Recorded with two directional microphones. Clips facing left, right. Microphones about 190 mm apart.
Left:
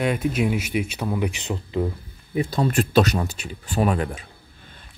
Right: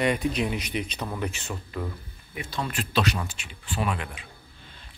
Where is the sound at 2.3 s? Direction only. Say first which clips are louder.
Left 10 dB; 35° left (ahead or behind).